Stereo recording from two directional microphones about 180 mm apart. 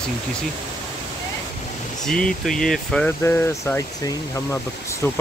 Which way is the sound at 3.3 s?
15° left (ahead or behind).